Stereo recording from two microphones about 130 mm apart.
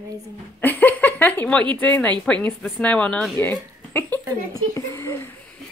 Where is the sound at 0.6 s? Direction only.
15° left (ahead or behind).